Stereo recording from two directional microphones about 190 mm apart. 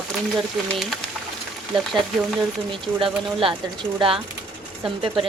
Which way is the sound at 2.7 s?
30° right (ahead or behind).